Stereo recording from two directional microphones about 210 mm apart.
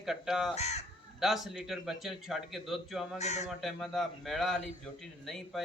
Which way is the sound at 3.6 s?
Centre (ahead or behind).